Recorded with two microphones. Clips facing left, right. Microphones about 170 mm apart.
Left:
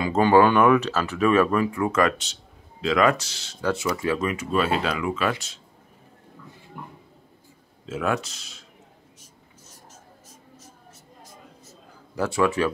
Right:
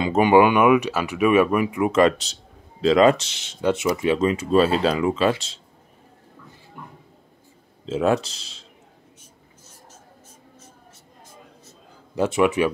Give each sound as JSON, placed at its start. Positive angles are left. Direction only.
{"t": 0.0, "sound": "speech", "side_deg": -20}
{"t": 7.8, "sound": "speech", "side_deg": -30}
{"t": 12.2, "sound": "speech", "side_deg": -20}